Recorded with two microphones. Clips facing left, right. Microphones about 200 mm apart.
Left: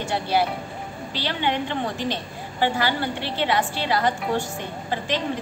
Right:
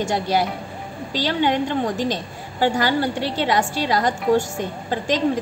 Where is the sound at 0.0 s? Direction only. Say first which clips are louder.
Right 2 dB; 45° right (ahead or behind).